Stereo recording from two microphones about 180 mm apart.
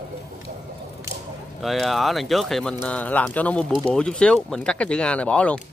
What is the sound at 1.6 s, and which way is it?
Speech, centre (ahead or behind).